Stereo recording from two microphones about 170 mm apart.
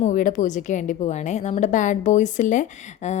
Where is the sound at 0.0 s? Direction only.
50° left (ahead or behind).